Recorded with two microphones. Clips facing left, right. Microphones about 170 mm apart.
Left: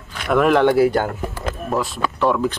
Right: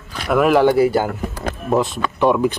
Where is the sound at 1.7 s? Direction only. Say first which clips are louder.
Right 5 dB; 20° right (ahead or behind).